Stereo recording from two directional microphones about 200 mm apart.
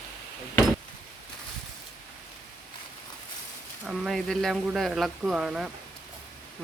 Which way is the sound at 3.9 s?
Centre (ahead or behind).